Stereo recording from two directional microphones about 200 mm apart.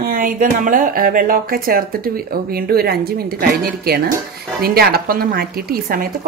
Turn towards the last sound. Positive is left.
turn(degrees=-45)  # may be behind; listen again after turning